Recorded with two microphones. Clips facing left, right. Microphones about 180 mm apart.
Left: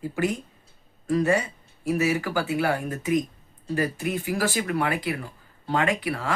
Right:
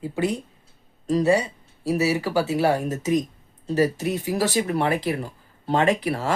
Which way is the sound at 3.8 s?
35° right (ahead or behind).